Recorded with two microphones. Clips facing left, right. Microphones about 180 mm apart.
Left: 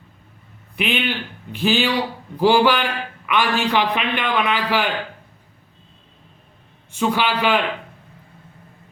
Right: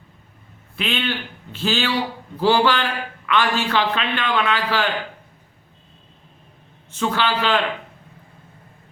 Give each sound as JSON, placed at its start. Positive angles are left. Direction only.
{"t": 0.8, "sound": "a man's voice", "side_deg": 15}
{"t": 6.9, "sound": "a man's voice", "side_deg": 10}